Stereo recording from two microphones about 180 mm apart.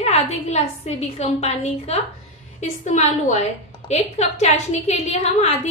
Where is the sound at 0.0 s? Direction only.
35° left (ahead or behind).